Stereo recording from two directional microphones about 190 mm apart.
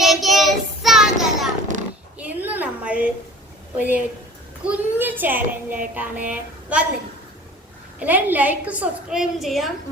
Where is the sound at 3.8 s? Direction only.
10° right (ahead or behind).